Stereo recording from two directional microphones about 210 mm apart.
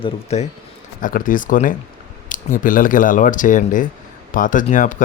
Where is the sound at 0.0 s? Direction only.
30° left (ahead or behind).